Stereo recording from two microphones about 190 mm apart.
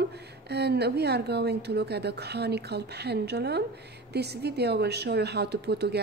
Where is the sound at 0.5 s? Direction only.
60° right (ahead or behind).